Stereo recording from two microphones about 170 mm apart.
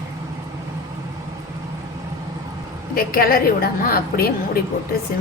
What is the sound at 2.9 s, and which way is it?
A woman's voice, 60° left (ahead or behind).